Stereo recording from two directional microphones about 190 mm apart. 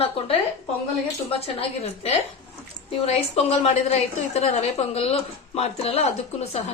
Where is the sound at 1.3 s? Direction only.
30° left (ahead or behind).